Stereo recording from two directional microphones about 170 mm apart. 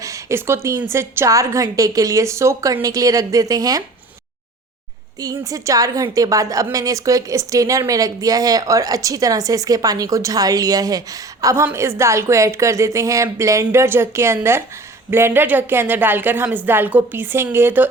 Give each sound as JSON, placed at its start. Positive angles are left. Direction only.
{"t": 0.0, "sound": "a sound", "side_deg": -15}
{"t": 0.8, "sound": "a woman's voice", "side_deg": -15}
{"t": 5.2, "sound": "a woman's voice", "side_deg": -20}